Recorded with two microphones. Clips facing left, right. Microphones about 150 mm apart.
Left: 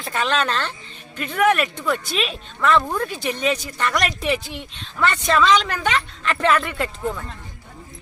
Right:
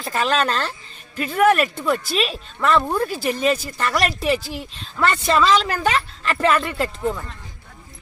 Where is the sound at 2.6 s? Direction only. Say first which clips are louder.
Even; 35° right (ahead or behind).